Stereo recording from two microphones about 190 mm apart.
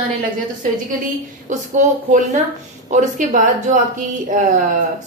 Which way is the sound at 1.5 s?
40° right (ahead or behind).